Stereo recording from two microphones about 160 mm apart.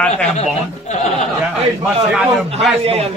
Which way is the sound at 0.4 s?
45° left (ahead or behind).